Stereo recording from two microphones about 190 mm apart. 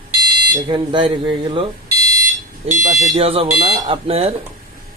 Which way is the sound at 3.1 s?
30° right (ahead or behind).